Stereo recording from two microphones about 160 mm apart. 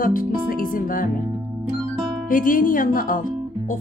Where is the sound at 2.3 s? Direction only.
60° left (ahead or behind).